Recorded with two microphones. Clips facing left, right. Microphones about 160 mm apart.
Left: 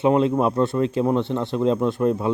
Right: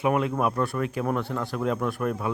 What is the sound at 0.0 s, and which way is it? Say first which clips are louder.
Speech: left 6 dB; 25° left (ahead or behind).